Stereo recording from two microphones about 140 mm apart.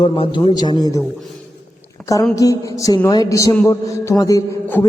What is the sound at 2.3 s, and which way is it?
A man's voice, 25° left (ahead or behind).